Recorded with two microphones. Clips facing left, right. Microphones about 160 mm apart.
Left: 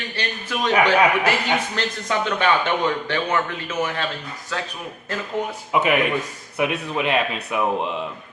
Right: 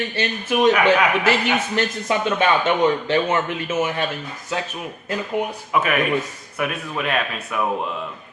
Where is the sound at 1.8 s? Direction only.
20° right (ahead or behind).